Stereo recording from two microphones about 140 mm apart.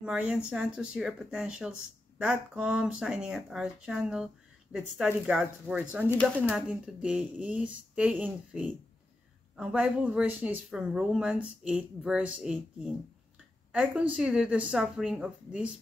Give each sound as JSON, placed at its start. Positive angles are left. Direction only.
{"t": 0.0, "sound": "a woman's voice", "side_deg": -5}